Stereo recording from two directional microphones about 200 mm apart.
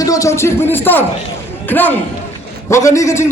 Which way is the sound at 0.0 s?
15° left (ahead or behind).